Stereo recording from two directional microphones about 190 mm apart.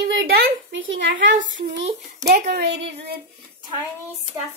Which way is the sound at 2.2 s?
55° right (ahead or behind).